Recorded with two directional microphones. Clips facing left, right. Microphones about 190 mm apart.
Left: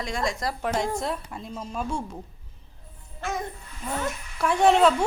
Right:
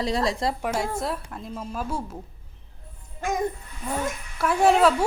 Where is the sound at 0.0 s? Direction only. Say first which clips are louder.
Right 4 dB; 35° right (ahead or behind).